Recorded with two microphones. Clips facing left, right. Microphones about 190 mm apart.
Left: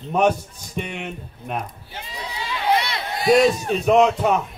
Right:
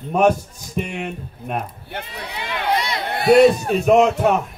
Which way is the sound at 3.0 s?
60° right (ahead or behind).